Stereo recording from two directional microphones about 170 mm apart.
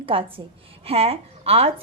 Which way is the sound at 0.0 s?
30° right (ahead or behind).